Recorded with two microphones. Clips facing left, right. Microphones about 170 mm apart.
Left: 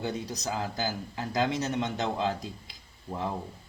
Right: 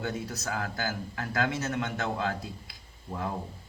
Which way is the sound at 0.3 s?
15° left (ahead or behind).